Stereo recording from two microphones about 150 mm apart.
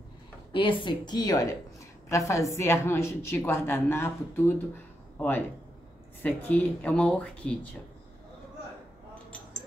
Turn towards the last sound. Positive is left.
turn(degrees=10)  # may be behind; listen again after turning